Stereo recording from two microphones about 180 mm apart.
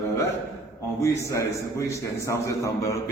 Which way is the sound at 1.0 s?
15° left (ahead or behind).